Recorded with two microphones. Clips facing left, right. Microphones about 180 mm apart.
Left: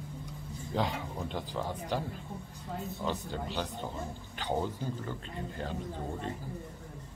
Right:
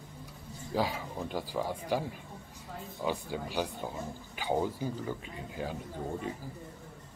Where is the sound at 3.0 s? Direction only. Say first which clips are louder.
Right 3 dB; 10° right (ahead or behind).